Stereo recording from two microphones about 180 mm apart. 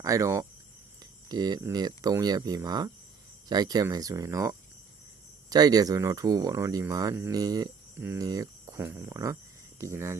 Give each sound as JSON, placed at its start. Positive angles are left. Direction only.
{"t": 0.0, "sound": "speech", "side_deg": -20}